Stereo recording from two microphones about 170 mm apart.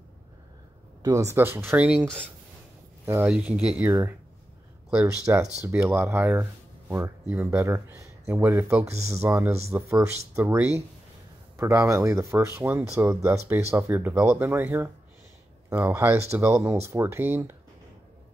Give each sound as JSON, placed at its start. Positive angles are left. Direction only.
{"t": 1.0, "sound": "speech", "side_deg": -15}
{"t": 5.0, "sound": "speech", "side_deg": -15}
{"t": 8.8, "sound": "speech", "side_deg": -40}
{"t": 9.1, "sound": "speech", "side_deg": -15}